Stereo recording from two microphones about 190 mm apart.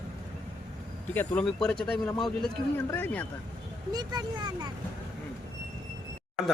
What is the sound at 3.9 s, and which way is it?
Speech, 20° right (ahead or behind).